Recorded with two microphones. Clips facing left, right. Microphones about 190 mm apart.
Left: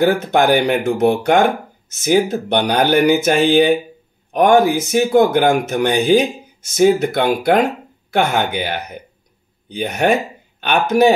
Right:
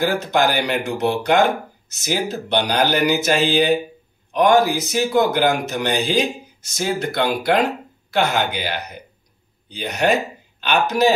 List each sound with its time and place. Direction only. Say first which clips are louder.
0.2 s speech: left 5 dB; 55° left (ahead or behind)